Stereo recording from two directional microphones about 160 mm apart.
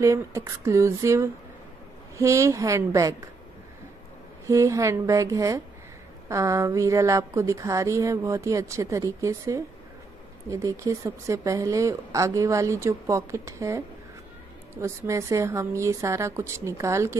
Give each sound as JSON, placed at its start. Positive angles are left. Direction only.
{"t": 0.0, "sound": "a woman's voice", "side_deg": -20}
{"t": 4.5, "sound": "a woman's voice", "side_deg": -20}